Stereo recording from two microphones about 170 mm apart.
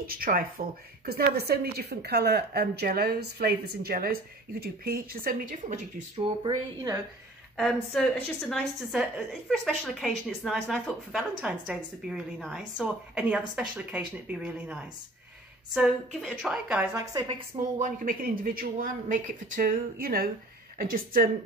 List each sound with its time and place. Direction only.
0.0 s speech: 60° right (ahead or behind)
1.0 s a woman's voice: 70° right (ahead or behind); by 5.8 s 50° right (ahead or behind)
6.1 s speech: 30° right (ahead or behind)
7.5 s a woman's voice: 5° left (ahead or behind)
16.9 s speech: 20° right (ahead or behind)
17.7 s speech: 55° right (ahead or behind)